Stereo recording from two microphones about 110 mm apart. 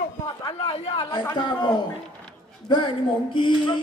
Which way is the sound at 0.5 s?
60° left (ahead or behind).